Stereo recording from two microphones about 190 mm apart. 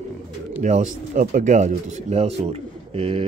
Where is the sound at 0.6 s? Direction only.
40° right (ahead or behind).